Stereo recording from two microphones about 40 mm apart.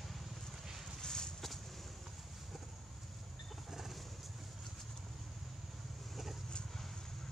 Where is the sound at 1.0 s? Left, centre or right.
Centre.